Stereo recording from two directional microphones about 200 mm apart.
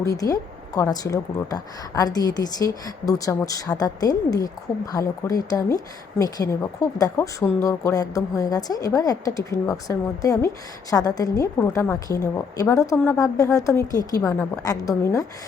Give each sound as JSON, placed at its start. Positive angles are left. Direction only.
{"t": 0.0, "sound": "speech", "side_deg": 15}